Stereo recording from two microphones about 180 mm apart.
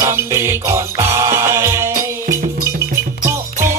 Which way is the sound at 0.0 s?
15° right (ahead or behind).